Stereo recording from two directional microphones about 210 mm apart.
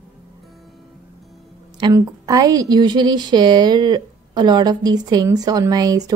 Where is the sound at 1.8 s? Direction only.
20° right (ahead or behind).